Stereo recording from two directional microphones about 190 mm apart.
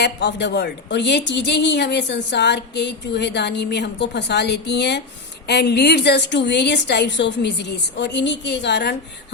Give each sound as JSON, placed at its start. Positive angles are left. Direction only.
{"t": 0.0, "sound": "speech", "side_deg": 65}